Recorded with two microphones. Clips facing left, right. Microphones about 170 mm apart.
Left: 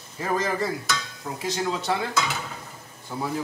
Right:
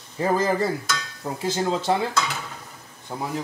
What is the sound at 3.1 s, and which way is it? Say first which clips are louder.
Speech: even; 30° right (ahead or behind).